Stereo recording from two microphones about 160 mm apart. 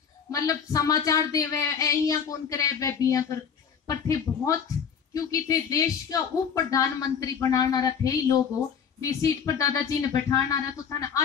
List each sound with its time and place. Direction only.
0.3 s speech: 20° left (ahead or behind)